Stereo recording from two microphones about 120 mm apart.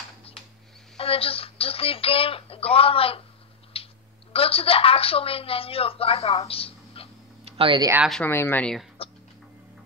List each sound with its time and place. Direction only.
0.9 s a woman's voice: 50° left (ahead or behind)
7.4 s a sound: 50° right (ahead or behind)
8.3 s speech: 20° left (ahead or behind)
9.0 s music: 50° left (ahead or behind)